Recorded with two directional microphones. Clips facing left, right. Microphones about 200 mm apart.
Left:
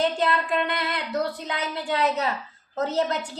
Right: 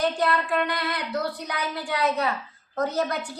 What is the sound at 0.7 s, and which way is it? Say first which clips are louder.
A woman's voice: even; 20° left (ahead or behind).